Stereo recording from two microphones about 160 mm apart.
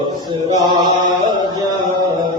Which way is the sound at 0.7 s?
25° right (ahead or behind).